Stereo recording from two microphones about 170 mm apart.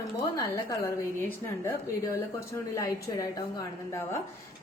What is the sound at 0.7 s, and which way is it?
A woman's voice, 15° left (ahead or behind).